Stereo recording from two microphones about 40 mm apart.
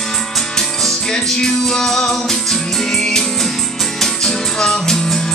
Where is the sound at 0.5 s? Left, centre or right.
Centre.